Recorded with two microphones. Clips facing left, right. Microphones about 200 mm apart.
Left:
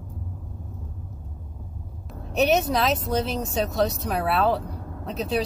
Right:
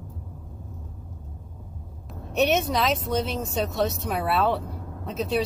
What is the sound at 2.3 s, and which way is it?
A woman's voice, centre (ahead or behind).